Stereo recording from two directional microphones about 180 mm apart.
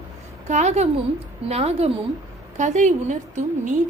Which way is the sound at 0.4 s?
40° right (ahead or behind).